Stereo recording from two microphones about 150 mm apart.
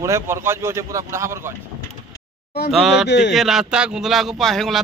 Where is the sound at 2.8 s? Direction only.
Centre (ahead or behind).